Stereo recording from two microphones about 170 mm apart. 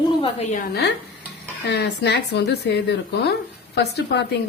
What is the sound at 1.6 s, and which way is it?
A woman's voice, 90° left.